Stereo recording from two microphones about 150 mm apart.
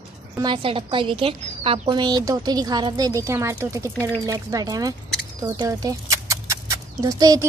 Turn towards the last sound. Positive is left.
turn(degrees=-25)  # may be behind; listen again after turning